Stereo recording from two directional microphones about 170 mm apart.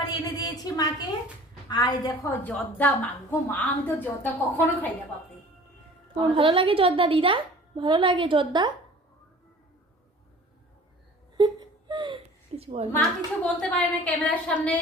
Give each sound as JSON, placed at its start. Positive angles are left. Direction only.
{"t": 0.0, "sound": "a woman's voice", "side_deg": 25}
{"t": 2.4, "sound": "a woman's voice", "side_deg": 10}
{"t": 6.1, "sound": "a woman's voice", "side_deg": -30}
{"t": 11.3, "sound": "baby cry", "side_deg": -25}
{"t": 13.4, "sound": "a woman's voice", "side_deg": 10}